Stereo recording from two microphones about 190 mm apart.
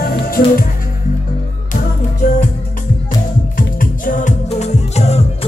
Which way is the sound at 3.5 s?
45° left (ahead or behind).